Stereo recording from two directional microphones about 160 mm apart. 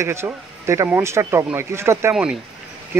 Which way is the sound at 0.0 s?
15° right (ahead or behind).